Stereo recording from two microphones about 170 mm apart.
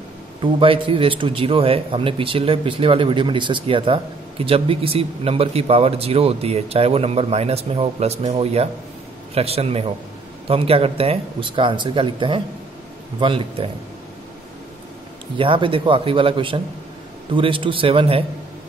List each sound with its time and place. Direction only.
0.4 s a man's voice: 30° right (ahead or behind)
15.3 s a man's voice: 30° right (ahead or behind)